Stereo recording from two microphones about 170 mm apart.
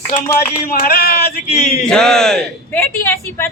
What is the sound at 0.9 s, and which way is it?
Speech, 65° left (ahead or behind).